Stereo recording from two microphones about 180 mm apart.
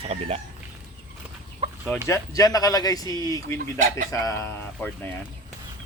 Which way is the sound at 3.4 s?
45° right (ahead or behind).